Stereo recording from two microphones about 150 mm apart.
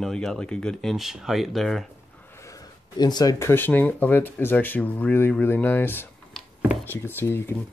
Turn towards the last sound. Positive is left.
turn(degrees=15)  # may be behind; listen again after turning